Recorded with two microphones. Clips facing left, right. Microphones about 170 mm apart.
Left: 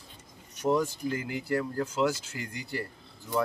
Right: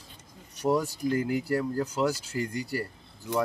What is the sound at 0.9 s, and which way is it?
Speech, 40° right (ahead or behind).